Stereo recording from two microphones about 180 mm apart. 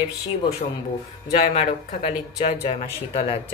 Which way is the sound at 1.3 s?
40° left (ahead or behind).